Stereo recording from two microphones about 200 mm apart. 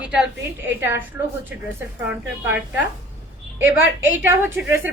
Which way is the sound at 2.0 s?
10° right (ahead or behind).